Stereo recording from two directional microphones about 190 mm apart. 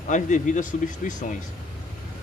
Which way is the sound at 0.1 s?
40° left (ahead or behind).